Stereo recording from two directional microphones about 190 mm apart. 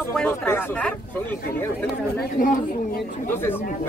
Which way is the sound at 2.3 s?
45° left (ahead or behind).